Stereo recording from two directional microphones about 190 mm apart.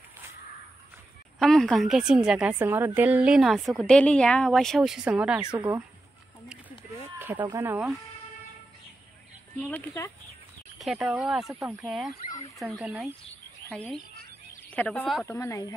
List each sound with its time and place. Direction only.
1.4 s a woman's voice: centre (ahead or behind)
7.2 s a sound: 10° right (ahead or behind)
7.4 s speech: 15° right (ahead or behind)
9.6 s speech: 10° left (ahead or behind)
10.8 s a woman's voice: centre (ahead or behind)
12.3 s speech: 20° left (ahead or behind)
12.5 s a woman's voice: 5° right (ahead or behind)
13.7 s speech: 5° left (ahead or behind)
15.2 s speech: 15° left (ahead or behind)